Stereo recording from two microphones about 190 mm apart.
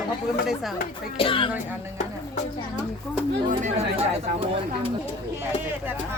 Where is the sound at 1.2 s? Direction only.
25° left (ahead or behind).